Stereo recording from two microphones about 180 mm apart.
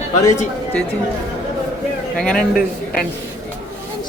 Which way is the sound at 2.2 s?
5° left (ahead or behind).